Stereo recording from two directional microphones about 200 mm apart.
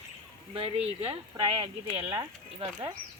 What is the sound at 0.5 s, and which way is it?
Speech, 30° right (ahead or behind).